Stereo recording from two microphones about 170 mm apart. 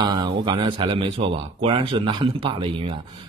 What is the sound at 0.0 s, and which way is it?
Speech, 25° right (ahead or behind).